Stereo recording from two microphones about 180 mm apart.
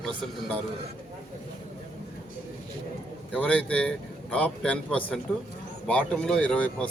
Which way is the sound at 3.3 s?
5° left (ahead or behind).